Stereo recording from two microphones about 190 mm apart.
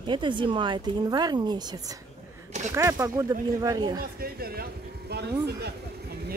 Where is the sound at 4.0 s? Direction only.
55° right (ahead or behind).